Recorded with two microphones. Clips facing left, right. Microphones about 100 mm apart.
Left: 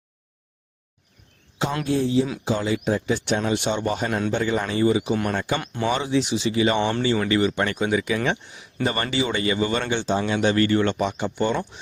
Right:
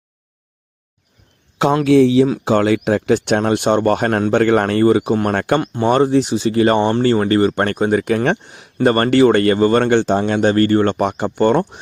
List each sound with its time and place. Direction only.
1.5 s speech: 70° right (ahead or behind); by 2.2 s 85° right
2.4 s speech: 65° right (ahead or behind)
5.8 s speech: 45° right (ahead or behind)